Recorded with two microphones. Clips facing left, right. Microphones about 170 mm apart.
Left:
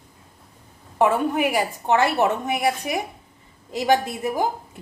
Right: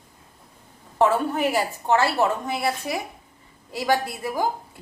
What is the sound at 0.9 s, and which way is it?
A woman's voice, 15° left (ahead or behind).